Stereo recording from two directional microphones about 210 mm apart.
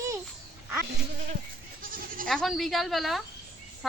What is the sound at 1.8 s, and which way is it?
Goat, 40° right (ahead or behind).